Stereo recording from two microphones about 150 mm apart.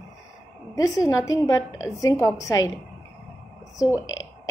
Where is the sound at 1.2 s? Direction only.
25° left (ahead or behind).